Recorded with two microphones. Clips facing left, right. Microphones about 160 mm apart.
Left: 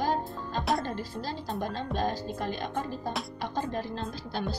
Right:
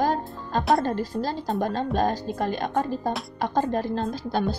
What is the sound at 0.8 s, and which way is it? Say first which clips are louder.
A woman's voice: right 8 dB; 45° right (ahead or behind).